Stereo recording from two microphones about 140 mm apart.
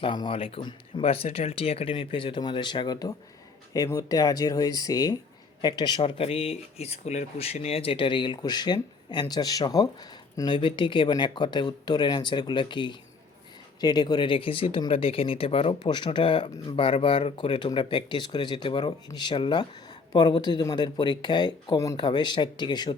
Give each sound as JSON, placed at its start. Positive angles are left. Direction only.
{"t": 0.0, "sound": "speech", "side_deg": 35}